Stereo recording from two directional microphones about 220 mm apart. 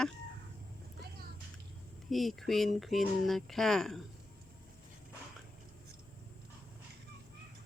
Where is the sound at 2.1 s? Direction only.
Centre (ahead or behind).